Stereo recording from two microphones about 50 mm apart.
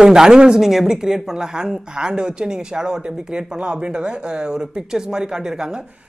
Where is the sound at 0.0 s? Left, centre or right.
Centre.